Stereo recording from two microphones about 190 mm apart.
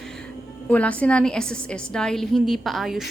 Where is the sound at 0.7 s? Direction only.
5° left (ahead or behind).